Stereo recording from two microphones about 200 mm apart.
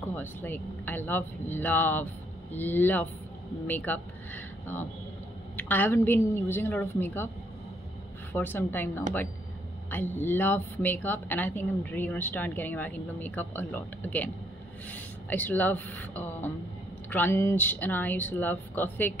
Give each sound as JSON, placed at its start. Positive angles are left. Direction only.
{"t": 0.1, "sound": "a woman's voice", "side_deg": 10}
{"t": 5.6, "sound": "a woman's voice", "side_deg": 10}
{"t": 8.3, "sound": "a woman's voice", "side_deg": 10}